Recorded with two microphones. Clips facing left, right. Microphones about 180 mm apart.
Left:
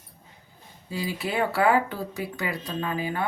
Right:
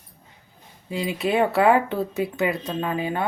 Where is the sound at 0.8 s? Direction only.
20° right (ahead or behind).